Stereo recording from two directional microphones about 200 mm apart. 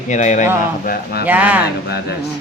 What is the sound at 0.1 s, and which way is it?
Speech, 35° left (ahead or behind).